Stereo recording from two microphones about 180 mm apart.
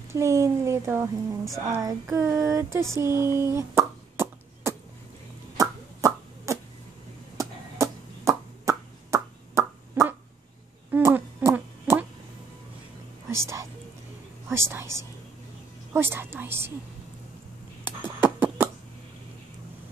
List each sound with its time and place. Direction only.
0.1 s a sound: 15° right (ahead or behind)
2.9 s plop: 15° right (ahead or behind)
5.6 s a sound: 20° right (ahead or behind)
7.3 s chop: 15° right (ahead or behind)
10.9 s insect: 10° right (ahead or behind)
13.3 s whispering: 15° right (ahead or behind)
14.5 s a woman's voice: 15° right (ahead or behind)
15.9 s a sound: 15° right (ahead or behind)
17.8 s beatboxing: 10° right (ahead or behind)